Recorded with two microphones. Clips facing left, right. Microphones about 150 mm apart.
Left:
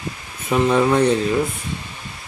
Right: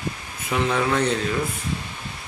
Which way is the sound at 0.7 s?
20° left (ahead or behind).